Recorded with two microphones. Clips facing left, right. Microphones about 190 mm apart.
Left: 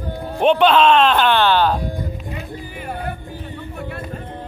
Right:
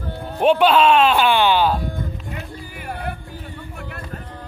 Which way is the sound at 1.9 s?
15° left (ahead or behind).